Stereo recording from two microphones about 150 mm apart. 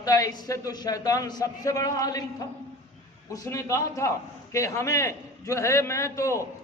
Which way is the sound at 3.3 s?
20° left (ahead or behind).